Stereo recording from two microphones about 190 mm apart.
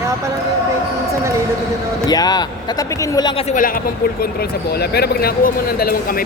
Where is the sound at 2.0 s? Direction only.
20° left (ahead or behind).